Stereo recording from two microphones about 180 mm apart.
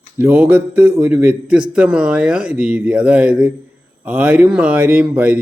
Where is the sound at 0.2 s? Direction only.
10° right (ahead or behind).